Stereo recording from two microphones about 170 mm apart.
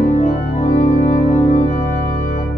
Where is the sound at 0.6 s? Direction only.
40° left (ahead or behind).